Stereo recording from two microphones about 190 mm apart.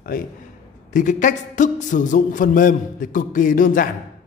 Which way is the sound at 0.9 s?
45° left (ahead or behind).